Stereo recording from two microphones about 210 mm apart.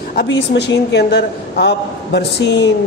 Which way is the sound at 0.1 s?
50° left (ahead or behind).